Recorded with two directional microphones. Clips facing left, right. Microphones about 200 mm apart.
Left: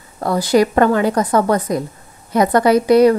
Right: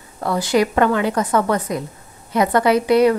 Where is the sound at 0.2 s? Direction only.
40° left (ahead or behind).